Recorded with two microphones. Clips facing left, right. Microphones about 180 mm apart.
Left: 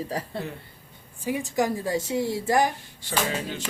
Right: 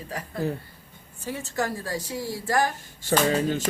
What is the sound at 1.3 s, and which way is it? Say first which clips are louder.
A woman's voice: left 4 dB; 15° left (ahead or behind).